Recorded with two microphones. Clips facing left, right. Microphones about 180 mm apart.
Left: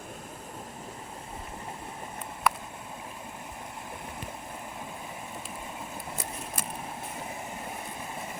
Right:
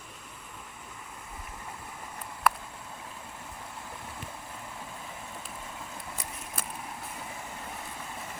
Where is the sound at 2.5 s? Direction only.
Centre (ahead or behind).